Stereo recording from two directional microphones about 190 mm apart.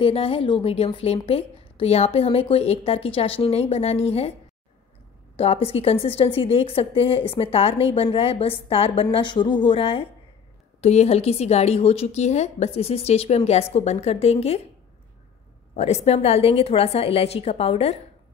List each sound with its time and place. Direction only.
0.0 s a woman's voice: 30° left (ahead or behind)
5.4 s a woman's voice: 30° left (ahead or behind)
15.7 s a woman's voice: 35° left (ahead or behind)